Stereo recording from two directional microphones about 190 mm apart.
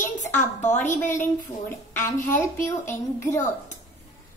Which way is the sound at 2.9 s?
15° left (ahead or behind).